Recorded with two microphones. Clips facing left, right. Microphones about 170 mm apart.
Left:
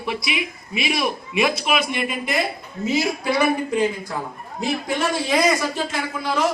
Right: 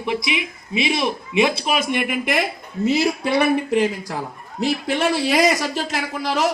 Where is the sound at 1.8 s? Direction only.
55° right (ahead or behind).